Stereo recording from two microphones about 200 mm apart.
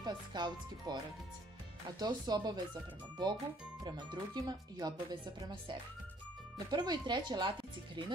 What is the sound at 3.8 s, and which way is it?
Speech, 20° right (ahead or behind).